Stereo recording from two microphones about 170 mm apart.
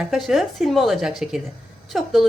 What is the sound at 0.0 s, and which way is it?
A woman's voice, centre (ahead or behind).